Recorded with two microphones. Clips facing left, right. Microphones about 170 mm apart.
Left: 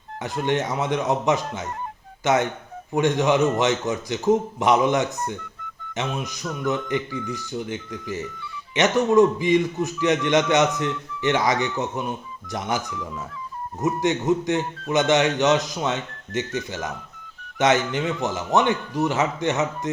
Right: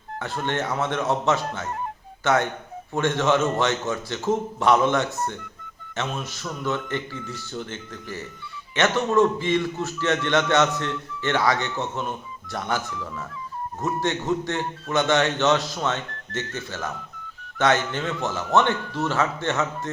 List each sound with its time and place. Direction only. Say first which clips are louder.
0.2 s a man's voice: left 3 dB; 15° left (ahead or behind)